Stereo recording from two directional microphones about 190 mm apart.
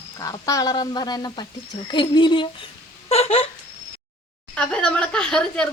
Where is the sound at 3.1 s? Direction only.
30° left (ahead or behind).